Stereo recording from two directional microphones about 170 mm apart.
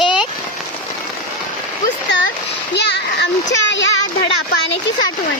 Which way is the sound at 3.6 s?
90° left.